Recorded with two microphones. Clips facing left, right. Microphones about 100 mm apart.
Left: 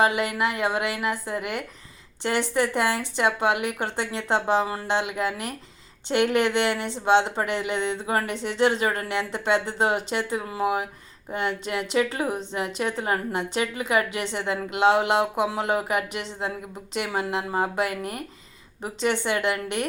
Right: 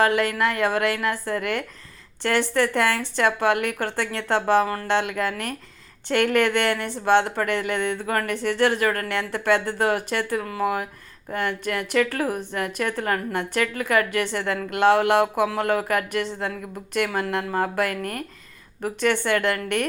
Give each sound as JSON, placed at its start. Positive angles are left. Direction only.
{"t": 0.0, "sound": "speech", "side_deg": 15}